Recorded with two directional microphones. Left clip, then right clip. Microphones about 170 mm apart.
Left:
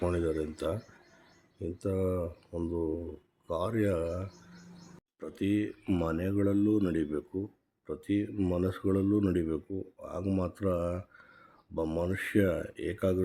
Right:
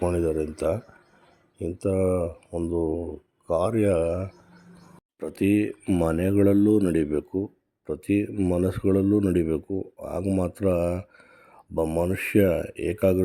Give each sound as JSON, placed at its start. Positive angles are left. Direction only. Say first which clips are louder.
{"t": 0.0, "sound": "speech", "louder": "right 6 dB", "side_deg": -15}
{"t": 5.2, "sound": "speech", "louder": "right 8 dB", "side_deg": -35}
{"t": 5.8, "sound": "speech", "louder": "right 8 dB", "side_deg": -20}
{"t": 6.1, "sound": "speech", "louder": "right 11 dB", "side_deg": -35}
{"t": 8.4, "sound": "speech", "louder": "right 7 dB", "side_deg": -20}
{"t": 8.6, "sound": "speech", "louder": "right 8 dB", "side_deg": -30}
{"t": 10.2, "sound": "speech", "louder": "right 6 dB", "side_deg": -20}
{"t": 10.5, "sound": "speech", "louder": "right 8 dB", "side_deg": -30}
{"t": 12.2, "sound": "speech", "louder": "right 7 dB", "side_deg": -30}